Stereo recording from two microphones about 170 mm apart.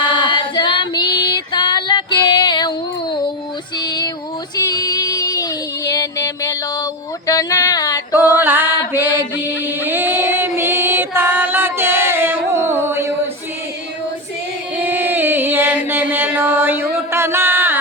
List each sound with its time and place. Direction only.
0.0 s female singing: 30° left (ahead or behind)
3.8 s female singing: 25° left (ahead or behind)
4.5 s child singing: 25° left (ahead or behind)
7.3 s a sound: 20° left (ahead or behind)
8.4 s music: 10° right (ahead or behind)
8.9 s mantra: 10° right (ahead or behind)
9.6 s music: 10° right (ahead or behind)
14.8 s chant: 10° right (ahead or behind)